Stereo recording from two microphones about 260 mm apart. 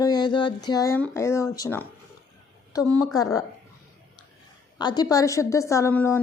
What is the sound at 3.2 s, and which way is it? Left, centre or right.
Speech, centre.